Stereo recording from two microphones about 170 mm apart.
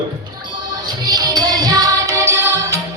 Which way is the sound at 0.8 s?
25° right (ahead or behind).